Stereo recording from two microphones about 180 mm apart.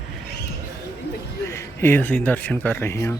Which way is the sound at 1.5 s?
15° left (ahead or behind).